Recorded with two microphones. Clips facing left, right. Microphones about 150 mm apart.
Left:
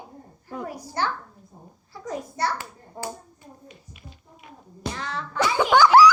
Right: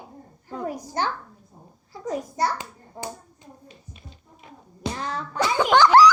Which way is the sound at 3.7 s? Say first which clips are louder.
Even; 30° right (ahead or behind).